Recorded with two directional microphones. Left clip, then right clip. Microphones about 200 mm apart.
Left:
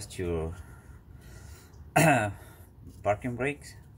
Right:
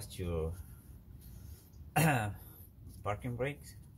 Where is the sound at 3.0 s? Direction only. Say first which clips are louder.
Left 9 dB; 35° left (ahead or behind).